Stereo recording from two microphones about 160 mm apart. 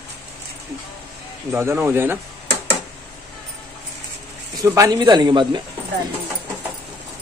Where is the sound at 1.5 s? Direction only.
15° right (ahead or behind).